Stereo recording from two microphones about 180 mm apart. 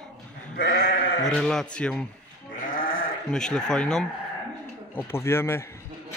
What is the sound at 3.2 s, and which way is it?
Speech, 5° left (ahead or behind).